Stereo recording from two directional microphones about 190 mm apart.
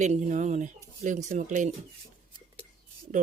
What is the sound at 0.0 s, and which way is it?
Speech, 40° right (ahead or behind).